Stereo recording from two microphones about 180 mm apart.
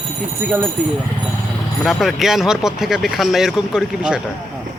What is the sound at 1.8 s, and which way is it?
Speech, centre (ahead or behind).